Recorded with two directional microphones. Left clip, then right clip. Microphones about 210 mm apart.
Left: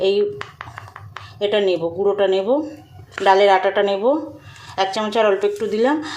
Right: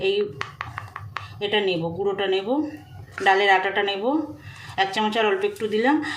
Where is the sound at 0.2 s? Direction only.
5° left (ahead or behind).